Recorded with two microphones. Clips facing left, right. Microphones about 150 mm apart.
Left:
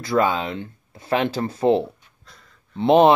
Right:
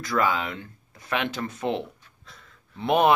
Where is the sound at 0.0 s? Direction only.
30° left (ahead or behind).